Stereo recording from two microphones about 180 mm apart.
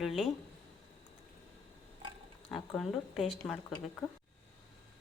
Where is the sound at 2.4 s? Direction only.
5° left (ahead or behind).